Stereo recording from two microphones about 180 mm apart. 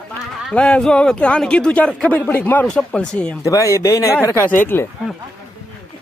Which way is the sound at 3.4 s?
15° left (ahead or behind).